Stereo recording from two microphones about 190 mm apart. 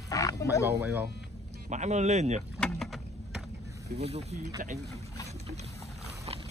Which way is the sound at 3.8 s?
35° right (ahead or behind).